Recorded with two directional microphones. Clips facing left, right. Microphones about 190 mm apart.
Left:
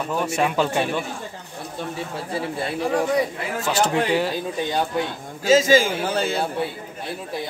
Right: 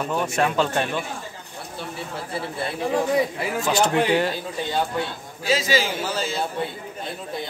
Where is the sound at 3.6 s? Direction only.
15° right (ahead or behind).